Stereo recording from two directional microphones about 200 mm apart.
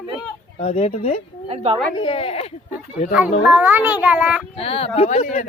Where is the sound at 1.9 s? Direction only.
25° left (ahead or behind).